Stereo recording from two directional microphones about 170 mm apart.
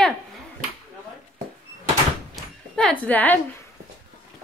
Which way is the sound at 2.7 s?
5° left (ahead or behind).